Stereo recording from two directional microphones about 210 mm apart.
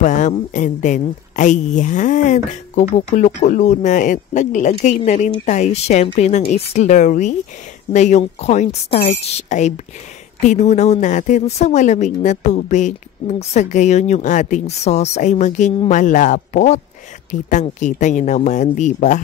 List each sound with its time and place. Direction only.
0.0 s a woman's voice: 35° left (ahead or behind)